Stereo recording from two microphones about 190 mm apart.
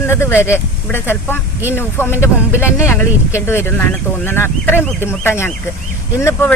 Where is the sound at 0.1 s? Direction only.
15° left (ahead or behind).